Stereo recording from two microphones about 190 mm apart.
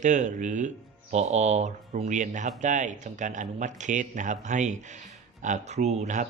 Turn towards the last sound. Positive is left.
turn(degrees=-40)  # may be behind; listen again after turning